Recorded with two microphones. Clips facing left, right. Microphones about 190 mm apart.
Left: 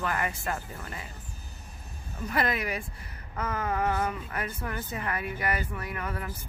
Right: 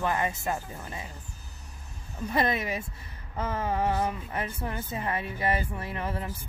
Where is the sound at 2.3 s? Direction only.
25° right (ahead or behind).